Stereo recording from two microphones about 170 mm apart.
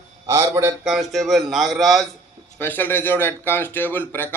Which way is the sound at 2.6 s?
10° left (ahead or behind).